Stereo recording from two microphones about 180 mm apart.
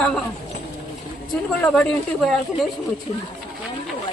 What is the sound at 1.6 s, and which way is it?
Speech, 5° left (ahead or behind).